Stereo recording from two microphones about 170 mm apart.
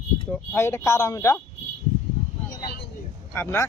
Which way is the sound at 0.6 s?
15° left (ahead or behind).